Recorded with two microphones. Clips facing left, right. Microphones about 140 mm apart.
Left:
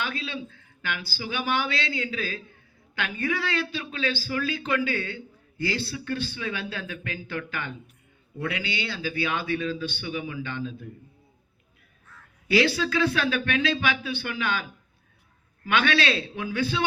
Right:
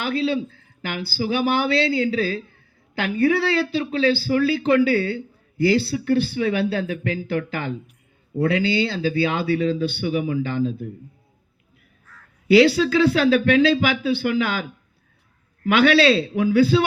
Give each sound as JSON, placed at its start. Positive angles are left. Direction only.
{"t": 0.0, "sound": "speech", "side_deg": -30}
{"t": 12.5, "sound": "speech", "side_deg": -30}